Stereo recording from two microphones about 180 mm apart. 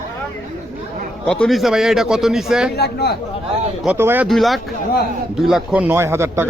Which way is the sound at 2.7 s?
60° left (ahead or behind).